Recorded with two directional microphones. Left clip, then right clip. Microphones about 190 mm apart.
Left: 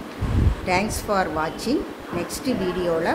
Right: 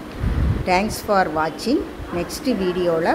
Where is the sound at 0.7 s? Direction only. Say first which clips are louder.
Right 4 dB; 15° right (ahead or behind).